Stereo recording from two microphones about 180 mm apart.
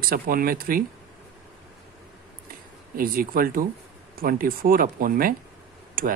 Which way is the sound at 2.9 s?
55° right (ahead or behind).